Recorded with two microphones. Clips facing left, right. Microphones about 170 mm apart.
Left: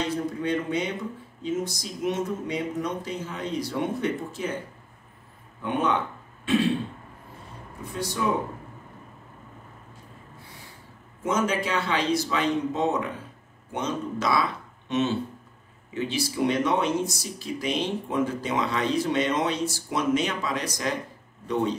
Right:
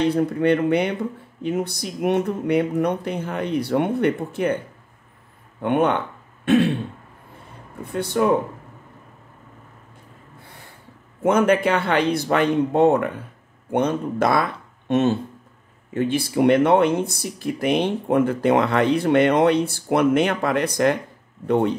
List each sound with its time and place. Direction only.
0.0 s speech: 60° right (ahead or behind)
5.6 s speech: 60° right (ahead or behind)
7.8 s speech: 60° right (ahead or behind)
10.4 s a sound: 55° right (ahead or behind)
11.2 s speech: 60° right (ahead or behind)